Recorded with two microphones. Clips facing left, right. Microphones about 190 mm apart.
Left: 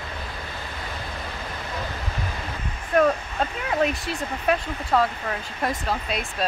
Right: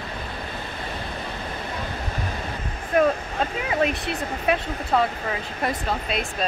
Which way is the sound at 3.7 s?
Centre (ahead or behind).